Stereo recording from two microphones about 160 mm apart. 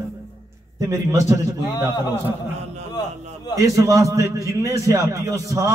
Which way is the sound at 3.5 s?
20° right (ahead or behind).